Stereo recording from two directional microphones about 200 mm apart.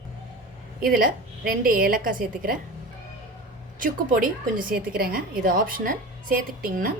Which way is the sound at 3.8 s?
45° right (ahead or behind).